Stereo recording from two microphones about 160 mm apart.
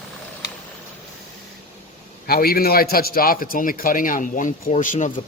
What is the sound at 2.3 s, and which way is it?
A man's voice, 70° left (ahead or behind).